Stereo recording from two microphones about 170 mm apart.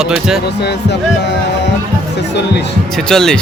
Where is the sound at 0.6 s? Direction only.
80° left.